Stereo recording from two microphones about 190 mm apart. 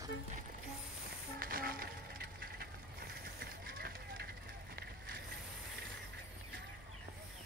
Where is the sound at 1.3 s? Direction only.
50° right (ahead or behind).